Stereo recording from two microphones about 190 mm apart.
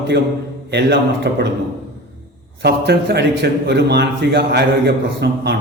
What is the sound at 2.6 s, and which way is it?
A man's voice, 60° right (ahead or behind).